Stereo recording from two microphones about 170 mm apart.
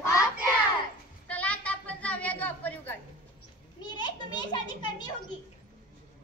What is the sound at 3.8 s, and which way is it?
Children playing, 25° left (ahead or behind).